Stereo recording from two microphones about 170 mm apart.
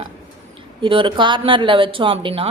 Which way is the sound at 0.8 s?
30° right (ahead or behind).